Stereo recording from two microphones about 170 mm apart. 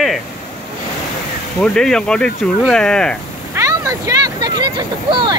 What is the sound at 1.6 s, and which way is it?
Speech, 5° left (ahead or behind).